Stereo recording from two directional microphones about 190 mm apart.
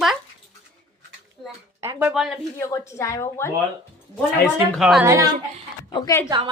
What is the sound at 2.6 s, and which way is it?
Speech, 15° left (ahead or behind).